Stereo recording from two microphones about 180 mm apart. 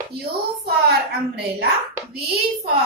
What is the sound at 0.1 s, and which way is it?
A woman's voice, 60° right (ahead or behind).